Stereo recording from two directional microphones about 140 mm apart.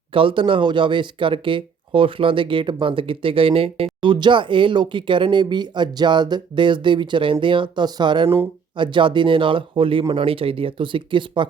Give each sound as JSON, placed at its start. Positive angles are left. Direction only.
{"t": 0.1, "sound": "speech", "side_deg": -40}